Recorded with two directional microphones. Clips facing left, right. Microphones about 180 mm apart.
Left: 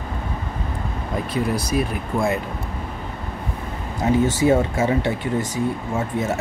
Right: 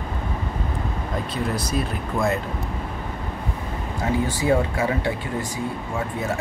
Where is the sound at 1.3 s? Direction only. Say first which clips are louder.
Left 4 dB; 10° left (ahead or behind).